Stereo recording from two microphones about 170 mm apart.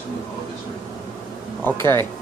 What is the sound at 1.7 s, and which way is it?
Speech, 15° left (ahead or behind).